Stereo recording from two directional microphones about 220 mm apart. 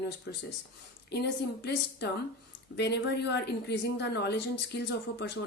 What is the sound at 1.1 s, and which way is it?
Speech, 50° left (ahead or behind).